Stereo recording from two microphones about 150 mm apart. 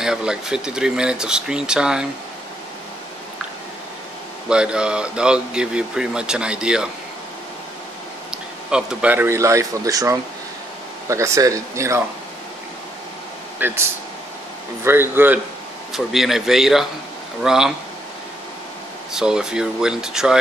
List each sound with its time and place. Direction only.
0.0 s speech: 5° right (ahead or behind)
4.5 s speech: 5° right (ahead or behind)
8.3 s speech: 5° right (ahead or behind)
13.6 s speech: 15° right (ahead or behind)
15.9 s speech: centre (ahead or behind)
19.1 s speech: 5° right (ahead or behind)